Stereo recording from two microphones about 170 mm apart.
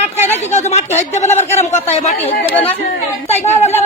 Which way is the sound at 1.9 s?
40° left (ahead or behind).